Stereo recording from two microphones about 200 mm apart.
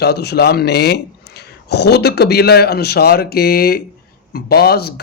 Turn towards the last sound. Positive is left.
turn(degrees=50)  # may be behind; listen again after turning